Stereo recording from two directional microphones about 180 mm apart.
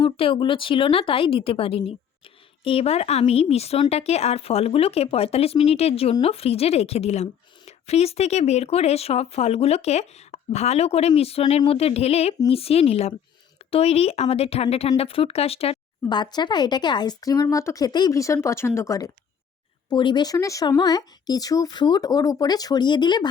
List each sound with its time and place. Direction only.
0.0 s a woman's voice: 30° left (ahead or behind)